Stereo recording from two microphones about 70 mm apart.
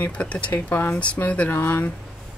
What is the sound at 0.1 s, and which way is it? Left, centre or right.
Speech, centre.